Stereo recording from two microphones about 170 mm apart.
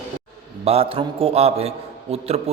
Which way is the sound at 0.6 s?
35° right (ahead or behind).